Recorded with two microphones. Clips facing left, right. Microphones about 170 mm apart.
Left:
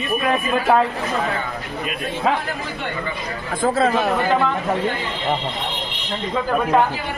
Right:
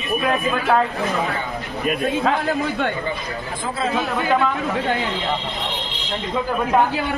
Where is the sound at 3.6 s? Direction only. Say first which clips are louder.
Left 6 dB; 45° left (ahead or behind).